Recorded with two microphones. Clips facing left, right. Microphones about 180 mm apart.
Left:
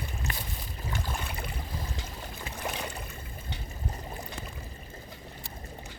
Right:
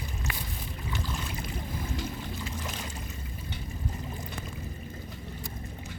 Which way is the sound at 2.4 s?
60° left (ahead or behind).